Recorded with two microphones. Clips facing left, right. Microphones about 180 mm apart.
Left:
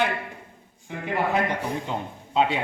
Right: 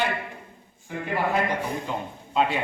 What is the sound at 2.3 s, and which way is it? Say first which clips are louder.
Speech: left 1 dB; 20° left (ahead or behind).